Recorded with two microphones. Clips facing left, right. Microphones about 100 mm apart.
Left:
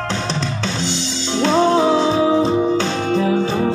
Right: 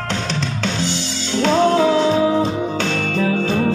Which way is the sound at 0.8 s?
20° left (ahead or behind).